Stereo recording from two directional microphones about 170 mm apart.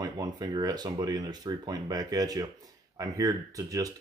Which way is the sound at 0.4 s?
25° right (ahead or behind).